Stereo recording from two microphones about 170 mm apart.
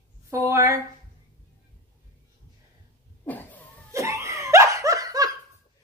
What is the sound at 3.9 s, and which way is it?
Laughter, 20° right (ahead or behind).